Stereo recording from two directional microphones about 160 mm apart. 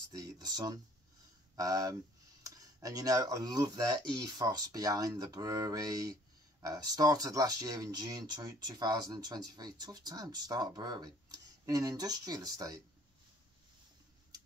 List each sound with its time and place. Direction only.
0.1 s speech: 25° right (ahead or behind)